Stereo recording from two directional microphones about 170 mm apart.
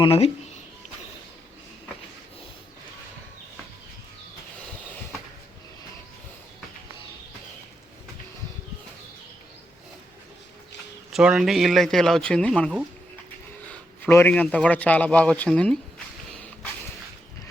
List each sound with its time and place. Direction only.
0.0 s speech: 35° left (ahead or behind)
11.1 s a man's voice: 5° right (ahead or behind)